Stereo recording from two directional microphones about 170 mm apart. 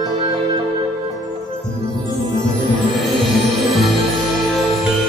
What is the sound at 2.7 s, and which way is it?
Music, centre (ahead or behind).